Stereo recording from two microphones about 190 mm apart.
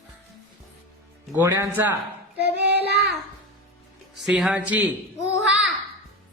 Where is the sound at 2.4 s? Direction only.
60° right (ahead or behind).